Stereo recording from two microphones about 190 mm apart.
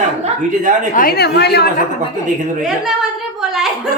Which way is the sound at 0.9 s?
50° left (ahead or behind).